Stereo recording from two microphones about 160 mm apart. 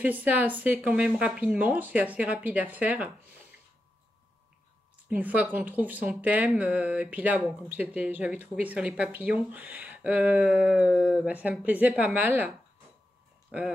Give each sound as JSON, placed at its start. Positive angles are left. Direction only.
{"t": 0.0, "sound": "a woman's voice", "side_deg": -10}
{"t": 5.1, "sound": "a woman's voice", "side_deg": -10}